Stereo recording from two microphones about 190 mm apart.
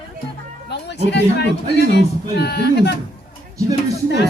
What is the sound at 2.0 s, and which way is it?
A woman's voice, 60° left (ahead or behind).